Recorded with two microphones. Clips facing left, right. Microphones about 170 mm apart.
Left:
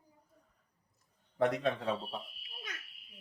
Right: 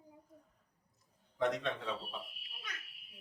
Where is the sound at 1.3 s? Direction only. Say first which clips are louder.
Left 3 dB; 60° left (ahead or behind).